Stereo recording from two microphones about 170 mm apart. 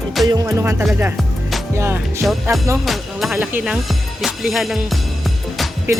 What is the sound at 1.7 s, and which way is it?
Music, 15° right (ahead or behind).